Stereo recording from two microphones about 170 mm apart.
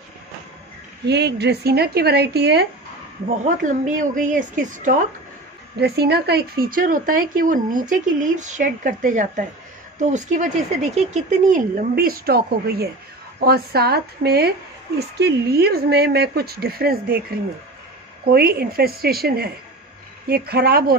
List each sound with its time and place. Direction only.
1.0 s speech: 80° right
3.4 s speech: 50° right (ahead or behind)
5.8 s speech: 70° right (ahead or behind)
18.3 s speech: 65° right (ahead or behind)